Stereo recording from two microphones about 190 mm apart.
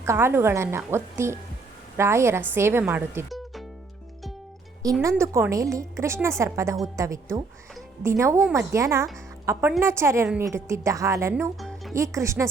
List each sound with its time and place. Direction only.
0.0 s a woman's voice: 15° right (ahead or behind)
3.2 s music: centre (ahead or behind)
4.8 s a woman's voice: 15° right (ahead or behind)